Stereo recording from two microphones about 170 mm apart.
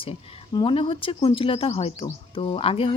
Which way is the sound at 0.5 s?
30° left (ahead or behind).